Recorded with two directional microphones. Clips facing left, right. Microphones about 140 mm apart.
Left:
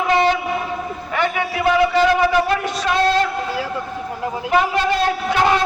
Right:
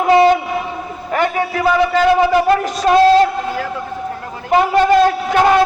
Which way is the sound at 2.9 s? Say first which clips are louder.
Right 9 dB; 40° right (ahead or behind).